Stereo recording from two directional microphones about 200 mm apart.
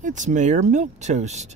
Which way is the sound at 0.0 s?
40° right (ahead or behind).